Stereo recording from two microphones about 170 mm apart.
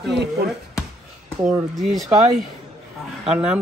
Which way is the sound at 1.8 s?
Centre (ahead or behind).